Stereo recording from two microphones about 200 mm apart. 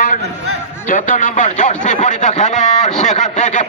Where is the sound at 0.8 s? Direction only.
40° left (ahead or behind).